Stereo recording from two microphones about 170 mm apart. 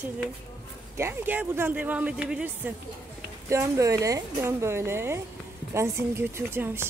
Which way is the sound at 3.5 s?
15° right (ahead or behind).